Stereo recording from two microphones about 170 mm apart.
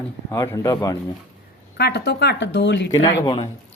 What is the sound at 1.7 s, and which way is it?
Speech, 75° left (ahead or behind).